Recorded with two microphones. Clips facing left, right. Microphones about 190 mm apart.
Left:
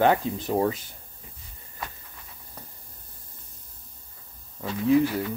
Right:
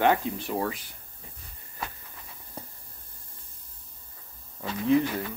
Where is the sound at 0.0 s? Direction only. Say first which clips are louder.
Left 2 dB; 30° left (ahead or behind).